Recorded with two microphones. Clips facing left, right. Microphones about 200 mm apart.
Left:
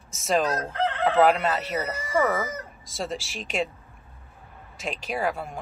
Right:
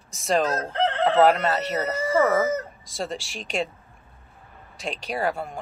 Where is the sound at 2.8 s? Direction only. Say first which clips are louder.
Right 1 dB; centre (ahead or behind).